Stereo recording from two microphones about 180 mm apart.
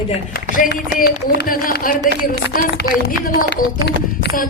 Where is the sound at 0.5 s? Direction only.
50° left (ahead or behind).